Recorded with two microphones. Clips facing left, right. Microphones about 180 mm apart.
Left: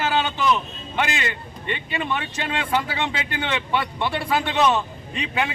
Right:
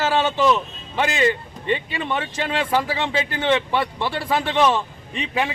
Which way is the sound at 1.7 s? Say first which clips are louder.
Right 3 dB; 30° right (ahead or behind).